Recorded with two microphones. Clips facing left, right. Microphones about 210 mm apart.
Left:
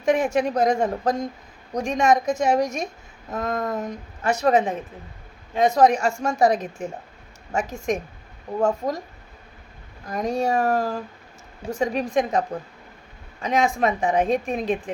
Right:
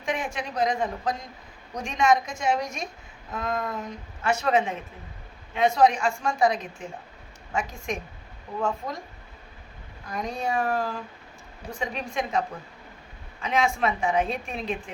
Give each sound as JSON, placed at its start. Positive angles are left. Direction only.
{"t": 0.0, "sound": "a woman's voice", "side_deg": 45}
{"t": 10.1, "sound": "a woman's voice", "side_deg": 45}